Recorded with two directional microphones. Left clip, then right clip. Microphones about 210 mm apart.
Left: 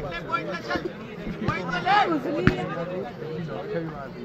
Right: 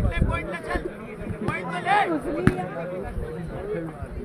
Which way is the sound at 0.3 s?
20° right (ahead or behind).